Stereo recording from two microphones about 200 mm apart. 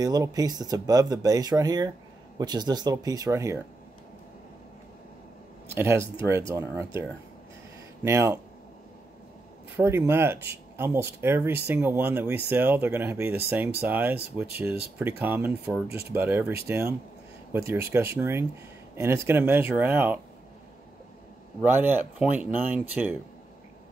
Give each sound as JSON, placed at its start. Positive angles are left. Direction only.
{"t": 0.0, "sound": "speech", "side_deg": -20}
{"t": 5.7, "sound": "speech", "side_deg": -10}
{"t": 8.0, "sound": "speech", "side_deg": -15}
{"t": 9.8, "sound": "speech", "side_deg": -10}
{"t": 21.6, "sound": "speech", "side_deg": -10}